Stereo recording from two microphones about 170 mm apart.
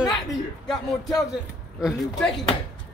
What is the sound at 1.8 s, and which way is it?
Speech, 5° right (ahead or behind).